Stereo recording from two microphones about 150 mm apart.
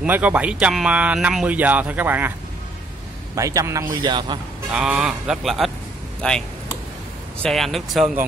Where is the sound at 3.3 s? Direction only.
20° right (ahead or behind).